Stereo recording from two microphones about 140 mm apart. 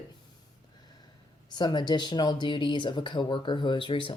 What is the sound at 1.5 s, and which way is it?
Speech, 30° left (ahead or behind).